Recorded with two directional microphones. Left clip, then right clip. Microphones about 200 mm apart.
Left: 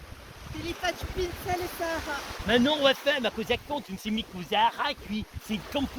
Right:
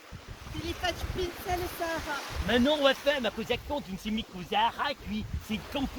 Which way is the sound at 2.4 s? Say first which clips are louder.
Left 2 dB; 60° left (ahead or behind).